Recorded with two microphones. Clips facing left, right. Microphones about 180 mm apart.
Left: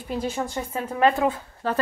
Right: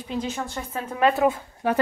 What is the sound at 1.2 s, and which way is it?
Speech, 10° right (ahead or behind).